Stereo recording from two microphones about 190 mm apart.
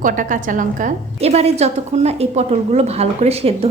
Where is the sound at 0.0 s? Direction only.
45° right (ahead or behind).